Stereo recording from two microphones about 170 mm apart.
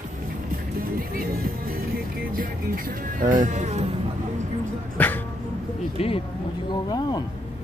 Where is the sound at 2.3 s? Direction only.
55° right (ahead or behind).